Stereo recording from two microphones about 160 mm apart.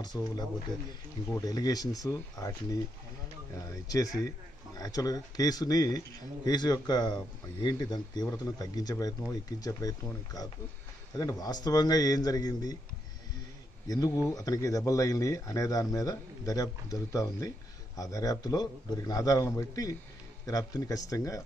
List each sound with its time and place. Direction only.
0.0 s speech: 25° left (ahead or behind)
13.8 s speech: 20° left (ahead or behind)